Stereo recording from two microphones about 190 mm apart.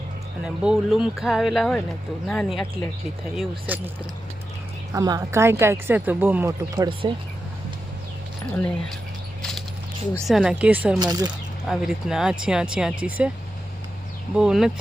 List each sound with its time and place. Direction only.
0.4 s speech: 5° right (ahead or behind)
3.7 s speech: 10° right (ahead or behind)
4.9 s speech: 20° right (ahead or behind)
7.0 s speech: 25° right (ahead or behind)
8.5 s speech: 5° left (ahead or behind)
9.4 s a sound: centre (ahead or behind)
10.2 s speech: centre (ahead or behind)
11.0 s speech: 20° right (ahead or behind)
11.7 s speech: centre (ahead or behind)
14.3 s speech: 5° right (ahead or behind)